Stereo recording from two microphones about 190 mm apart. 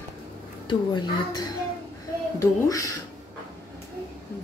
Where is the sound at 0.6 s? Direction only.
20° left (ahead or behind).